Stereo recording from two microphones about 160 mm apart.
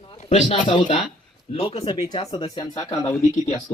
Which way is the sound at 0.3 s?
45° left (ahead or behind).